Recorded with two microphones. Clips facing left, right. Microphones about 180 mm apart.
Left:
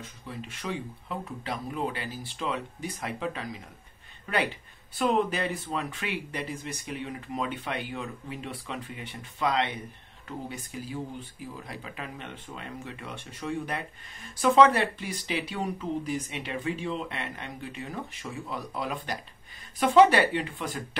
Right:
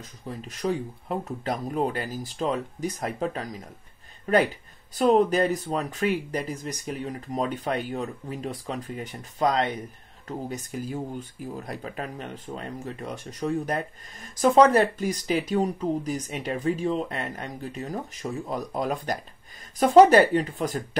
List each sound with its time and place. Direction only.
0.0 s speech: 40° right (ahead or behind)